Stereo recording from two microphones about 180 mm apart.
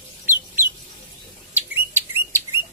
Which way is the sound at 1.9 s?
15° right (ahead or behind).